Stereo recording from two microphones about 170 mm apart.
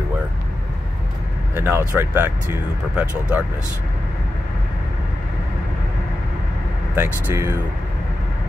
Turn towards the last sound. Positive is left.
turn(degrees=-15)  # may be behind; listen again after turning